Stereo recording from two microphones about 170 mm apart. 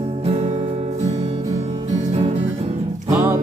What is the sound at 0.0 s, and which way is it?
Music, 35° right (ahead or behind).